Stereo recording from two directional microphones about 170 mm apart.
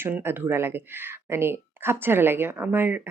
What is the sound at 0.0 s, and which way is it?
Speech, 15° right (ahead or behind).